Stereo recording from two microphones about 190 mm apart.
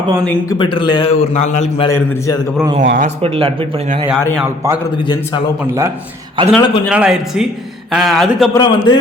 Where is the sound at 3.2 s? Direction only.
30° right (ahead or behind).